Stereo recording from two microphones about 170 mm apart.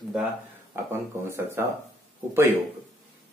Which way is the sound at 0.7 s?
15° right (ahead or behind).